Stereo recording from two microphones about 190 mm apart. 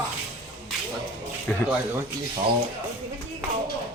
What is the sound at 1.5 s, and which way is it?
Speech, 10° left (ahead or behind).